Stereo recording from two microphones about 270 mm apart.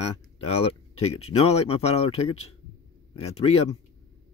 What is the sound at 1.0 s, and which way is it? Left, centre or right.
Speech, left.